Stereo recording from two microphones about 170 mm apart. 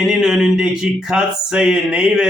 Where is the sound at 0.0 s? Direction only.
5° right (ahead or behind).